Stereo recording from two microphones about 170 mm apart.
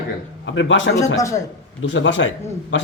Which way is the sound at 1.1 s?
20° left (ahead or behind).